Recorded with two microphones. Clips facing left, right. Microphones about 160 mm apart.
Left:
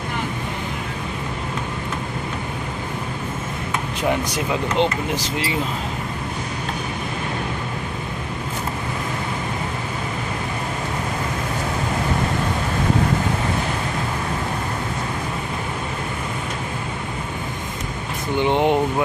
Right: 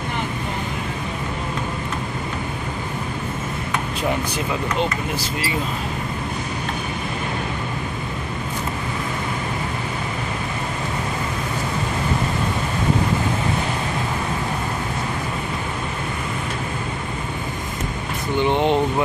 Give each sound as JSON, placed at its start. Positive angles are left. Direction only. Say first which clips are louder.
{"t": 4.3, "sound": "speech", "louder": "left 1 dB", "side_deg": 20}
{"t": 18.4, "sound": "air conditioning", "louder": "left 1 dB", "side_deg": 15}